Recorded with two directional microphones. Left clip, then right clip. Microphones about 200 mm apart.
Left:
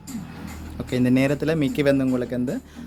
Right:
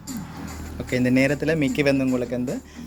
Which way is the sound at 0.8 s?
25° left (ahead or behind).